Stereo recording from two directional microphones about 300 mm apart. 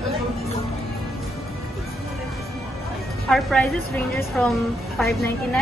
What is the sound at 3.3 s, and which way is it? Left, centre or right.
A woman's voice, centre.